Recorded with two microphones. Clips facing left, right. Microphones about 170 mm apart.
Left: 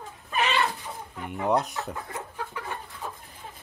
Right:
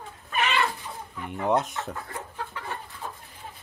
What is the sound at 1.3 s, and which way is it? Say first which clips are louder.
Speech: even; centre (ahead or behind).